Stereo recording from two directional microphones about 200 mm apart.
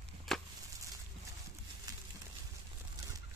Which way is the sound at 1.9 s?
20° right (ahead or behind).